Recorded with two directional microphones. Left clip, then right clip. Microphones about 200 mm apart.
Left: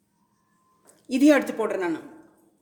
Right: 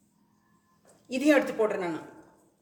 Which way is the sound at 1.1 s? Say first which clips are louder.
Left 4 dB; 50° left (ahead or behind).